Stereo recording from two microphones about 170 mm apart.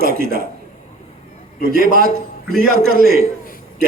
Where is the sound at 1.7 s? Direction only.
60° right (ahead or behind).